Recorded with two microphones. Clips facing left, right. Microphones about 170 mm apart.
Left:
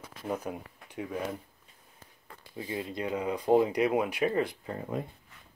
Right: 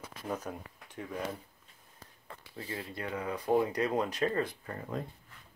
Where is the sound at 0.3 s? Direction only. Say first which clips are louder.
Left 3 dB; 10° left (ahead or behind).